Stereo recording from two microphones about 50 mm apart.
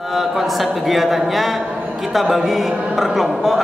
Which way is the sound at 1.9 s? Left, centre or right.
Centre.